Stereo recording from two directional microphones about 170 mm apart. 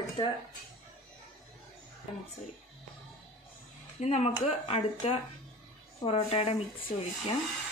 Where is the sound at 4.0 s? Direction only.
40° left (ahead or behind).